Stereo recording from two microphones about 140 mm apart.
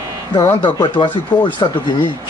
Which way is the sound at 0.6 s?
35° left (ahead or behind).